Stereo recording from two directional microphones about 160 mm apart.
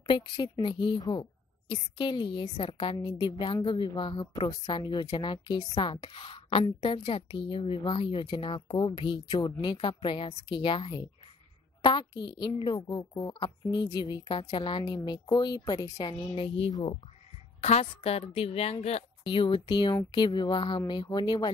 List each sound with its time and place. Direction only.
0.1 s a woman's voice: 30° left (ahead or behind)